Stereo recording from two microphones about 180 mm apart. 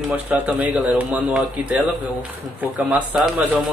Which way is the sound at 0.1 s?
10° right (ahead or behind).